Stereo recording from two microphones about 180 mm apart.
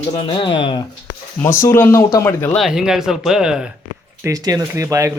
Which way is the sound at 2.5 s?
Centre (ahead or behind).